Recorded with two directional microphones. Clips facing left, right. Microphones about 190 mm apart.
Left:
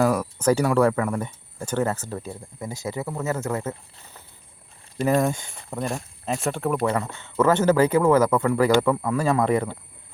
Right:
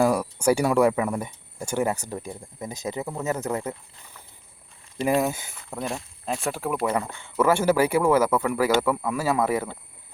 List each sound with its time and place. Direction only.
0.0 s speech: 15° right (ahead or behind)
5.0 s speech: 5° right (ahead or behind)